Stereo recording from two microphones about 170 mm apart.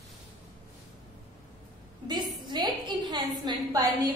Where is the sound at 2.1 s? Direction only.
25° right (ahead or behind).